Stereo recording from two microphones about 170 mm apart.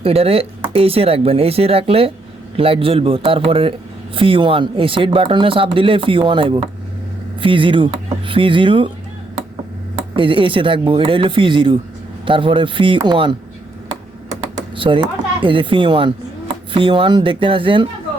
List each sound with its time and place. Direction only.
0.0 s speech: 35° right (ahead or behind)
10.2 s speech: 30° right (ahead or behind)
14.8 s speech: 30° right (ahead or behind)